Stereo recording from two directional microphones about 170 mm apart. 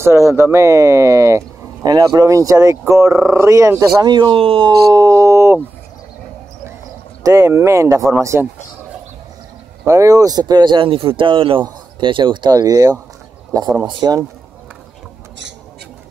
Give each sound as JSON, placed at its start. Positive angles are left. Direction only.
{"t": 0.0, "sound": "speech", "side_deg": -15}
{"t": 7.2, "sound": "speech", "side_deg": -15}
{"t": 9.8, "sound": "a man's voice", "side_deg": -20}